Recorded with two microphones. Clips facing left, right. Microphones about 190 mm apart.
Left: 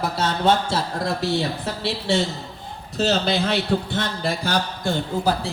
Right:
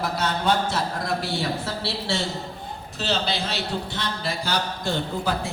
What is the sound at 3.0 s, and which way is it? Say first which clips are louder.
A man's voice: left 6 dB; 45° left (ahead or behind).